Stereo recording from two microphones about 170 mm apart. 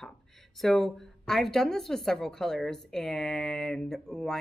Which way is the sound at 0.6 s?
Centre (ahead or behind).